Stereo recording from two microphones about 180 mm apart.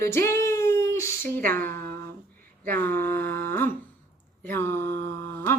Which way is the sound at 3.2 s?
60° right (ahead or behind).